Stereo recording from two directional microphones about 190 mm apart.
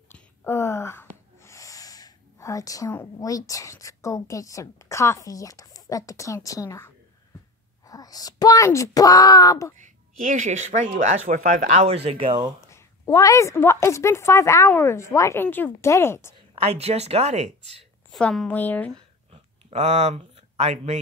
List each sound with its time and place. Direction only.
0.1 s speech: 10° left (ahead or behind)
9.8 s speech: 45° right (ahead or behind); by 12.5 s 25° right (ahead or behind)
12.6 s a woman's voice: 15° left (ahead or behind)
16.6 s speech: 30° right (ahead or behind)
18.1 s a woman's voice: centre (ahead or behind)
19.3 s a sound: 35° right (ahead or behind)